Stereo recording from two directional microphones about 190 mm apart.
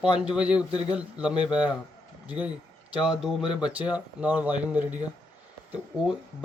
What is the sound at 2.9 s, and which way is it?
A man's voice, 5° right (ahead or behind).